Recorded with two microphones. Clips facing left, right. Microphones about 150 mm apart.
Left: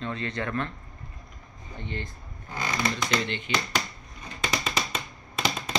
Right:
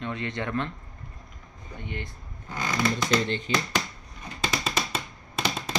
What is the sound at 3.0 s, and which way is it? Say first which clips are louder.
Speech: right 3 dB; 40° right (ahead or behind).